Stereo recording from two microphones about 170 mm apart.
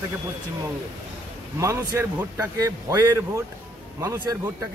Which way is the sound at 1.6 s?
15° right (ahead or behind).